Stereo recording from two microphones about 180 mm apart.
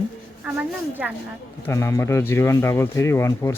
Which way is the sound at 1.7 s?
15° left (ahead or behind).